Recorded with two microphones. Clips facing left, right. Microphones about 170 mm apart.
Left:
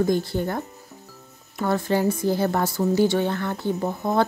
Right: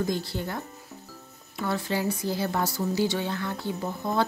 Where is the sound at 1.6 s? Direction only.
50° left (ahead or behind).